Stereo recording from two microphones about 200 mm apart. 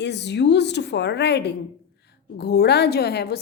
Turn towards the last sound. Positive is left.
turn(degrees=55)  # may be behind; listen again after turning